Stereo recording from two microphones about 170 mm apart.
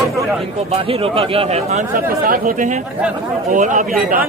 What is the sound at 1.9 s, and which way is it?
Speech, 55° right (ahead or behind).